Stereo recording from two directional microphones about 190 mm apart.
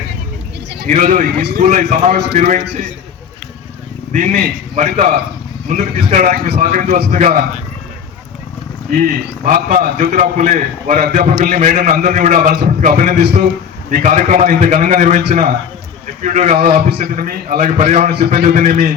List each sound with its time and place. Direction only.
0.9 s a man's voice: 45° right (ahead or behind)
1.6 s speech: 40° right (ahead or behind)
4.1 s a man's voice: 40° right (ahead or behind)
8.9 s a man's voice: 45° right (ahead or behind)
18.1 s a man's voice: 55° right (ahead or behind)
18.4 s speech: 40° right (ahead or behind)